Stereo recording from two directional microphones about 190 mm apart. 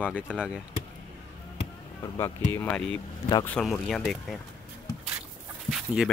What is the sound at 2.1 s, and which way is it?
Speech, 15° left (ahead or behind).